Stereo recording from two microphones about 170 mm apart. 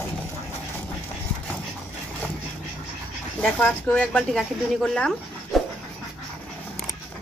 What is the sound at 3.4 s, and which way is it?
Speech, 10° left (ahead or behind).